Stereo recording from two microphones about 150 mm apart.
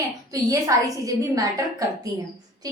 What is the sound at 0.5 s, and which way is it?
A woman's voice, 25° right (ahead or behind).